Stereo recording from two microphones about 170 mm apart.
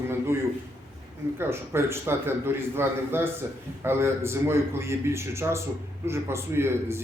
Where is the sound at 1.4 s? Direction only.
15° right (ahead or behind).